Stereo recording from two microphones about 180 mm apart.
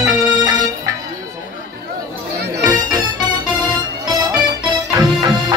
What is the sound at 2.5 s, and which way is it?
Music, 20° right (ahead or behind).